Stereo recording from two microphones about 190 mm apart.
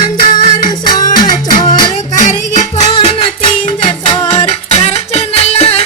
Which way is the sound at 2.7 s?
25° left (ahead or behind).